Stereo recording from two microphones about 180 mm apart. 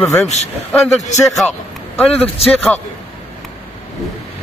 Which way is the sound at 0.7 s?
5° left (ahead or behind).